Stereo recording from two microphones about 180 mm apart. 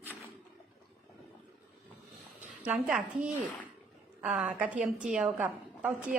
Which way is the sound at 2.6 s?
5° right (ahead or behind).